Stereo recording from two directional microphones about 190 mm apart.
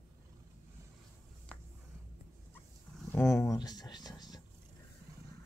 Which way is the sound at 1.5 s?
10° left (ahead or behind).